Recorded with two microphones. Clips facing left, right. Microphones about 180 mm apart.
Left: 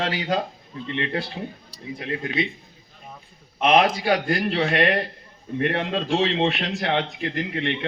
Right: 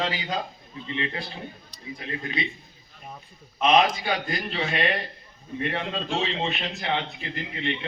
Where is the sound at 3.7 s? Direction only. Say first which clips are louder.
Left 3 dB; 65° left (ahead or behind).